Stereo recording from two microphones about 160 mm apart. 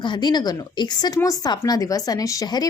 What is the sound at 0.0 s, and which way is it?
Speech, 25° left (ahead or behind).